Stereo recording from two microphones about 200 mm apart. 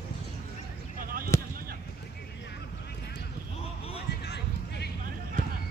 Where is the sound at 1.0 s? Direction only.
45° right (ahead or behind).